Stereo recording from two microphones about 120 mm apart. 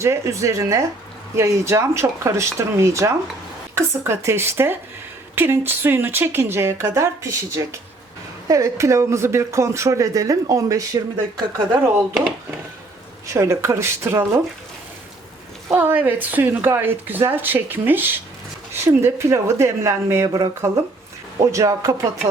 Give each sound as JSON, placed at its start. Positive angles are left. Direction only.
{"t": 0.0, "sound": "speech", "side_deg": -25}
{"t": 13.3, "sound": "speech", "side_deg": -20}
{"t": 15.7, "sound": "speech", "side_deg": -15}